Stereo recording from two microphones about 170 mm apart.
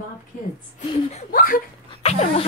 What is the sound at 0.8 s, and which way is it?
Speech, 30° left (ahead or behind).